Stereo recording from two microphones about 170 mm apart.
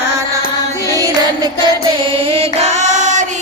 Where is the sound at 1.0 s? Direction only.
20° right (ahead or behind).